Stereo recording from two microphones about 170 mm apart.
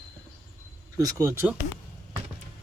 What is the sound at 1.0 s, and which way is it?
Speech, 20° right (ahead or behind).